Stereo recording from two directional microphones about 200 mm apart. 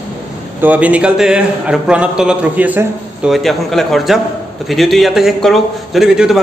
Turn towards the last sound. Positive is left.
turn(degrees=-5)  # may be behind; listen again after turning